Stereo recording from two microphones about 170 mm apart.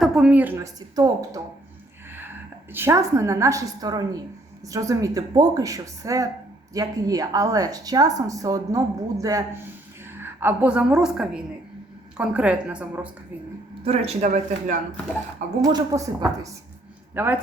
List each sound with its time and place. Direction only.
0.0 s a woman's voice: 5° right (ahead or behind); by 1.4 s 20° right (ahead or behind)
2.7 s a woman's voice: 15° right (ahead or behind)
13.8 s speech: 35° right (ahead or behind)
15.6 s a woman's voice: 20° right (ahead or behind)
17.2 s a woman's voice: 10° right (ahead or behind)